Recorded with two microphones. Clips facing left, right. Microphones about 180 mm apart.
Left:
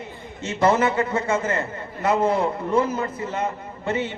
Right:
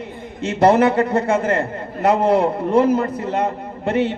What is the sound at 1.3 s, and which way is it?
Speech, 60° right (ahead or behind).